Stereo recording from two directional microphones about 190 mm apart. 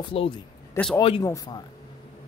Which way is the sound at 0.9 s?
25° left (ahead or behind).